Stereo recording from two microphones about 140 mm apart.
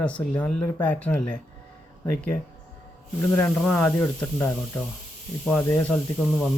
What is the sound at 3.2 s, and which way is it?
Speech, 15° left (ahead or behind).